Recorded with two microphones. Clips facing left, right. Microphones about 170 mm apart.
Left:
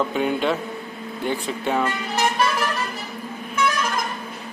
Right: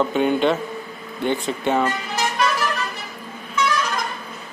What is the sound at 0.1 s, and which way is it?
A man's voice, centre (ahead or behind).